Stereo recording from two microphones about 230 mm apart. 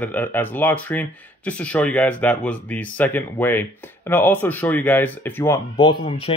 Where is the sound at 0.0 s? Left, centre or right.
Centre.